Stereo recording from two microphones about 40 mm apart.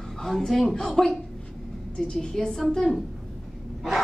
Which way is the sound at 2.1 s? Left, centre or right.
Centre.